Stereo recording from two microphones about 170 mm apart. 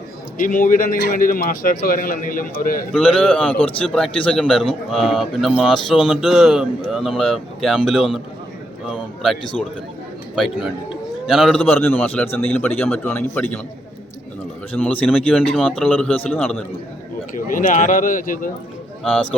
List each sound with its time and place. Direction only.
0.4 s a man's voice: 50° left (ahead or behind)
2.9 s a man's voice: 5° left (ahead or behind)
11.3 s a man's voice: centre (ahead or behind)
14.7 s a man's voice: 10° left (ahead or behind)
17.3 s a man's voice: 50° left (ahead or behind)